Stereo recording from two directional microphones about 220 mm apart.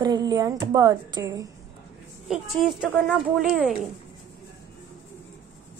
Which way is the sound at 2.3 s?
Centre (ahead or behind).